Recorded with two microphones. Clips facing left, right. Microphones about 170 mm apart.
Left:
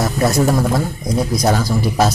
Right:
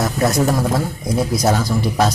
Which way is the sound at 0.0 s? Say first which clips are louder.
Left 1 dB; centre (ahead or behind).